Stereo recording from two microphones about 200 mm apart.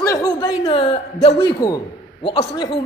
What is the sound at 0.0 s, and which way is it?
A man's voice, 20° left (ahead or behind).